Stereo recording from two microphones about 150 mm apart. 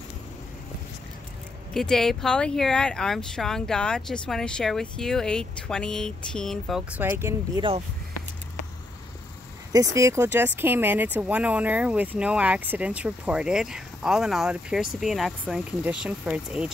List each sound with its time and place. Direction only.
1.7 s speech: 5° left (ahead or behind)
7.0 s speech: 15° right (ahead or behind)
9.7 s speech: 20° right (ahead or behind); by 16.7 s 5° right (ahead or behind)